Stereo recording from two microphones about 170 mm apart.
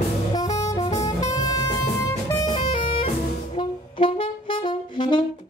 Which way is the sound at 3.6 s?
30° left (ahead or behind).